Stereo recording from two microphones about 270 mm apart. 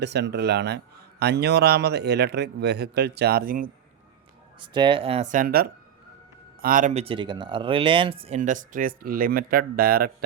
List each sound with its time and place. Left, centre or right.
0.0 s a man's voice: right
4.6 s speech: centre; by 10.2 s right